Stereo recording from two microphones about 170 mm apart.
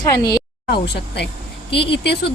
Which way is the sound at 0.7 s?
75° left (ahead or behind).